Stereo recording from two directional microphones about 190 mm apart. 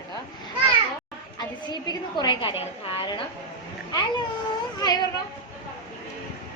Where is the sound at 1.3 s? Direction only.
20° left (ahead or behind).